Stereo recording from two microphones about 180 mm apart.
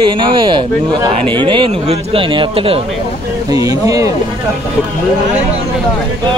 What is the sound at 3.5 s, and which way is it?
Speech, 20° right (ahead or behind).